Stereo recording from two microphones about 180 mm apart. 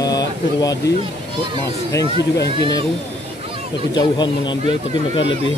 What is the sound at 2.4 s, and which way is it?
Speech, 70° left (ahead or behind).